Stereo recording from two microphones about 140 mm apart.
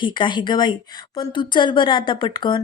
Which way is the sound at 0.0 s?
35° left (ahead or behind).